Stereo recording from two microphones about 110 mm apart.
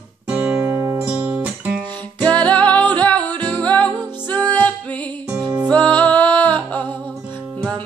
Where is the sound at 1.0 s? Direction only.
10° right (ahead or behind).